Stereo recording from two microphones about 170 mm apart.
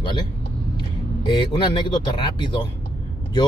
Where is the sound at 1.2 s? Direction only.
30° left (ahead or behind).